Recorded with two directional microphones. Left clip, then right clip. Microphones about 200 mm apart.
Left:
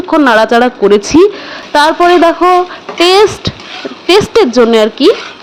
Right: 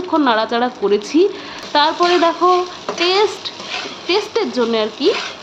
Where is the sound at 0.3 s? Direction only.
35° left (ahead or behind).